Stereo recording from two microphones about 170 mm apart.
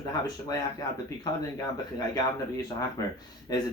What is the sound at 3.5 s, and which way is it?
Speech, 20° left (ahead or behind).